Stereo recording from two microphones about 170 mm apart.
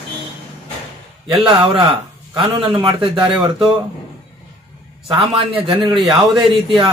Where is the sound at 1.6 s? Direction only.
30° right (ahead or behind).